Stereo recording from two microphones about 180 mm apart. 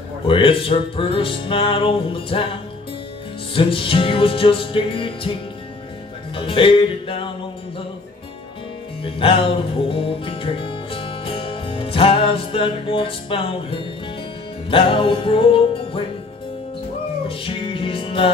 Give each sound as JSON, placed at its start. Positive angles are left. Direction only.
{"t": 0.3, "sound": "music", "side_deg": 30}
{"t": 3.5, "sound": "music", "side_deg": 30}
{"t": 6.3, "sound": "music", "side_deg": 30}
{"t": 9.0, "sound": "music", "side_deg": 30}
{"t": 17.3, "sound": "music", "side_deg": 30}